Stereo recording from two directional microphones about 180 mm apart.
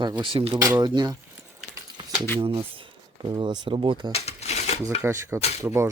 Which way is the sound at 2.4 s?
30° right (ahead or behind).